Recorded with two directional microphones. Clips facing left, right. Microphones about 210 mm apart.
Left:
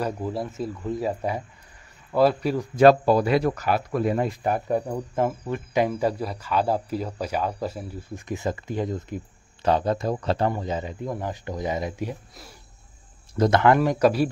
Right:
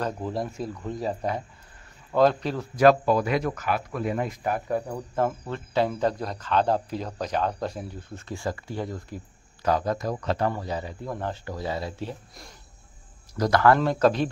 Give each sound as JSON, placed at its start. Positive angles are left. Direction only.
{"t": 0.0, "sound": "speech", "side_deg": 5}
{"t": 2.7, "sound": "speech", "side_deg": 30}
{"t": 8.3, "sound": "speech", "side_deg": 20}
{"t": 13.4, "sound": "speech", "side_deg": 20}